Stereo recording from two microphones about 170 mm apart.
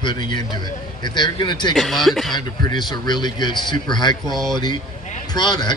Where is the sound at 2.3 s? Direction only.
25° left (ahead or behind).